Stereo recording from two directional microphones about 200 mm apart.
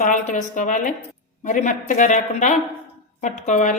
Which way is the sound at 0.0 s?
40° left (ahead or behind).